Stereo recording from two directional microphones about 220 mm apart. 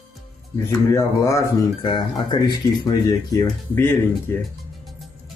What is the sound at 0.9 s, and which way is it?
Speech, 15° left (ahead or behind).